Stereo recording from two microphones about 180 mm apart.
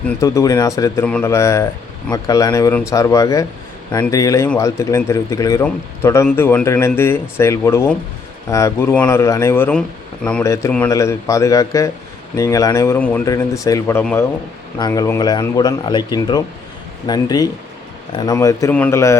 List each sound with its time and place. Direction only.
0.2 s speech: 20° left (ahead or behind)
13.2 s speech: 20° left (ahead or behind)
14.8 s speech: 20° left (ahead or behind)